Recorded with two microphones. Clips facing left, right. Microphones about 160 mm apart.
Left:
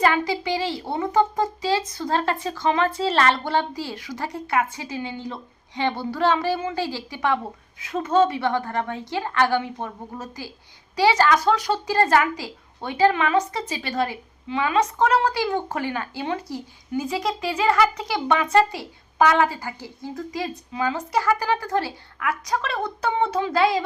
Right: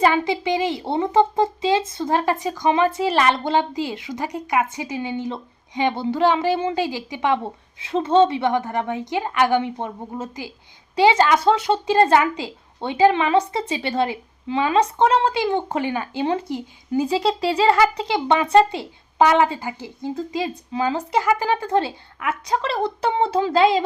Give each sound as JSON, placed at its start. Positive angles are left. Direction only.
{"t": 0.0, "sound": "speech", "side_deg": -20}